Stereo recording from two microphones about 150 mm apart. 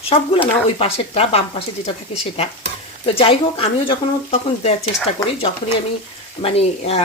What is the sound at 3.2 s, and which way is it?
A woman's voice, 40° left (ahead or behind).